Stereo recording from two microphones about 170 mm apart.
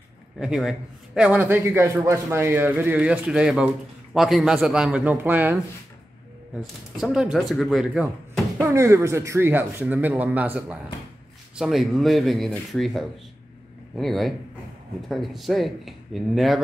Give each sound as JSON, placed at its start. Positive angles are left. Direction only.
{"t": 0.4, "sound": "a man's voice", "side_deg": -5}
{"t": 6.6, "sound": "speech", "side_deg": -5}
{"t": 8.6, "sound": "a man's voice", "side_deg": -15}